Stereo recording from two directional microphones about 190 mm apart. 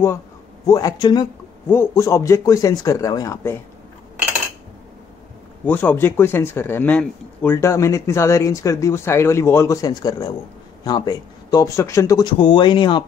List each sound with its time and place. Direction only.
0.7 s speech: 20° left (ahead or behind)
5.7 s speech: 10° left (ahead or behind); by 13.0 s 25° left (ahead or behind)